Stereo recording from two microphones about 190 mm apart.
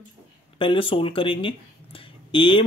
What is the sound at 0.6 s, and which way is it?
Speech, 30° left (ahead or behind).